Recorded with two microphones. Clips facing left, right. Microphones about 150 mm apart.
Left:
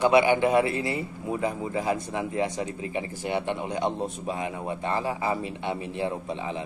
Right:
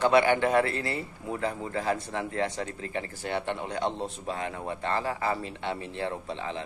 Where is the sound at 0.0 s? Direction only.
15° left (ahead or behind).